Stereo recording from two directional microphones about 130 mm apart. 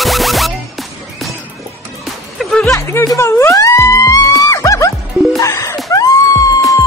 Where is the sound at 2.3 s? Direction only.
5° left (ahead or behind).